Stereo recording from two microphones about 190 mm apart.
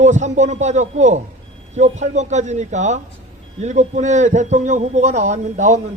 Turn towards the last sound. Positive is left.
turn(degrees=-40)  # may be behind; listen again after turning